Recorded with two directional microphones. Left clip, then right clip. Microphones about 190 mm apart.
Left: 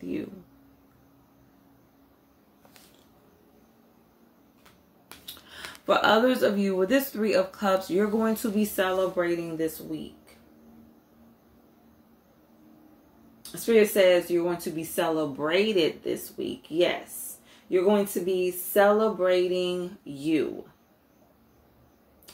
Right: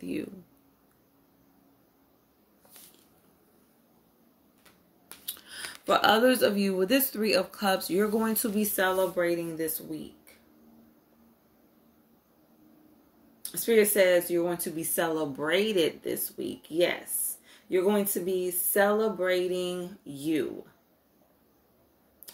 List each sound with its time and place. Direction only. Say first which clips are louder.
5.2 s speech: right 1 dB; 40° right (ahead or behind)
13.4 s speech: left 2 dB; 45° right (ahead or behind)